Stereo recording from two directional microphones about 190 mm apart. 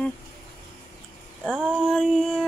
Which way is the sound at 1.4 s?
Centre (ahead or behind).